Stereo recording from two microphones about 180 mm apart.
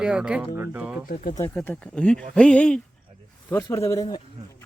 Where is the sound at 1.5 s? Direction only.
10° left (ahead or behind).